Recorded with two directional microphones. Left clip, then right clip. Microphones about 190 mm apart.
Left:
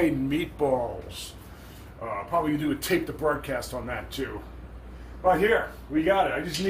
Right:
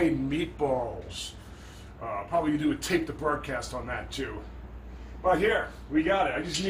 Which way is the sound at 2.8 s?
5° left (ahead or behind).